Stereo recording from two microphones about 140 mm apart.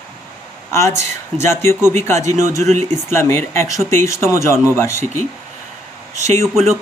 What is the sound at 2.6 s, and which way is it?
Speech, 55° right (ahead or behind).